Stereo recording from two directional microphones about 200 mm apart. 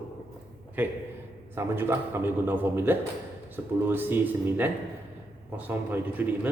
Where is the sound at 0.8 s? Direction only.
10° right (ahead or behind).